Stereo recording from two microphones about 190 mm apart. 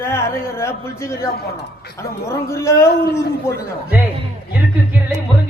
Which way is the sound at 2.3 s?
15° left (ahead or behind).